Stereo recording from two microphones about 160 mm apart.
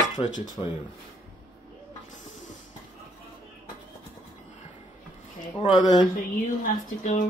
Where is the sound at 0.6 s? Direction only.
25° left (ahead or behind).